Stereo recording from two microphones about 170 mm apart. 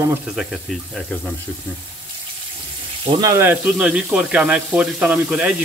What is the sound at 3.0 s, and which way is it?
Speech, 20° right (ahead or behind).